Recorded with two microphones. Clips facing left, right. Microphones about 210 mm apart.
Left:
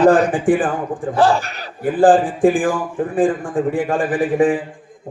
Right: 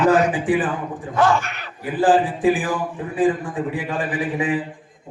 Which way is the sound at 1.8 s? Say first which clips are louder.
Left 5 dB; 50° left (ahead or behind).